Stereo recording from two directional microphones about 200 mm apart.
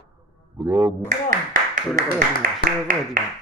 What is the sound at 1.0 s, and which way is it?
Speech, 40° right (ahead or behind).